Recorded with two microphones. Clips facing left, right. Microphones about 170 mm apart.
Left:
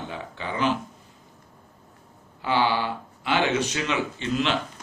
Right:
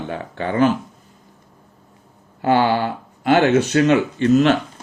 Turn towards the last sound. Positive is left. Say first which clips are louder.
# right 11 dB
turn(degrees=-45)  # may be behind; listen again after turning